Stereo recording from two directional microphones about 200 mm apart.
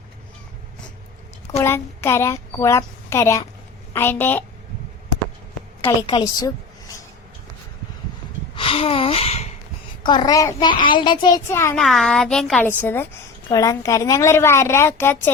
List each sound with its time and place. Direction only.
1.6 s a woman's voice: 10° left (ahead or behind)
6.1 s a woman's voice: 20° left (ahead or behind)
8.5 s a sound: 25° left (ahead or behind)
10.1 s a child's voice: 20° left (ahead or behind)
11.8 s a woman's voice: centre (ahead or behind)